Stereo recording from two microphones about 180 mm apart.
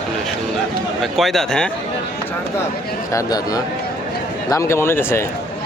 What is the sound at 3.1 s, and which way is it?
Speech, 20° left (ahead or behind).